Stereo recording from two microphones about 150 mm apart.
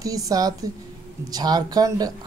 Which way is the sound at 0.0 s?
25° right (ahead or behind).